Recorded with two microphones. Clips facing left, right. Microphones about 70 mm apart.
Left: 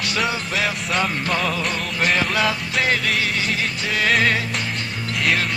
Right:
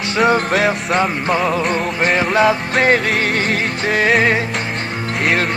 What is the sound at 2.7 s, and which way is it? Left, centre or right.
Speech, right.